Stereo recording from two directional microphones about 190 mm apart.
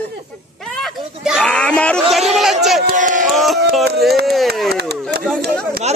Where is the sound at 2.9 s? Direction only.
45° right (ahead or behind).